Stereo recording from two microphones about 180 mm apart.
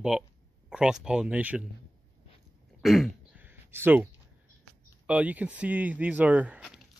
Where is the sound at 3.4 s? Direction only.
10° right (ahead or behind).